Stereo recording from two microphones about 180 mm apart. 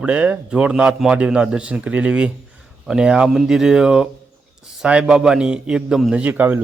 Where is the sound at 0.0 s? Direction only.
5° right (ahead or behind).